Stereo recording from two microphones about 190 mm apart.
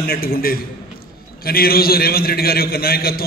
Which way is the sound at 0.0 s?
50° left (ahead or behind).